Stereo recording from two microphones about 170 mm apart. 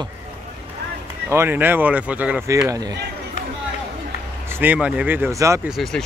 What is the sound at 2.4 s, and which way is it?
Speech, 20° right (ahead or behind).